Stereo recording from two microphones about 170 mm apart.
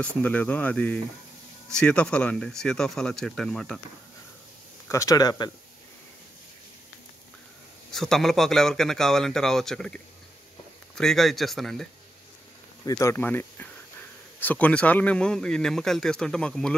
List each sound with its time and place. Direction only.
0.0 s a man's voice: 10° left (ahead or behind)
4.8 s speech: 20° left (ahead or behind)
7.9 s a man's voice: centre (ahead or behind)
11.0 s a man's voice: centre (ahead or behind)
12.8 s a man's voice: 20° left (ahead or behind)